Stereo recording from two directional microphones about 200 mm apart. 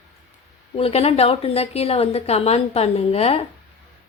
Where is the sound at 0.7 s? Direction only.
30° left (ahead or behind).